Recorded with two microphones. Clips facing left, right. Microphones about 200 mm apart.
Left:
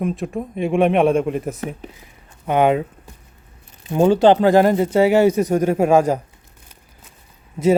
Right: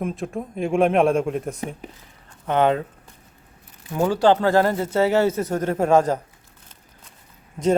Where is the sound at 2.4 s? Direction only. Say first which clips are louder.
Left 3 dB; 10° left (ahead or behind).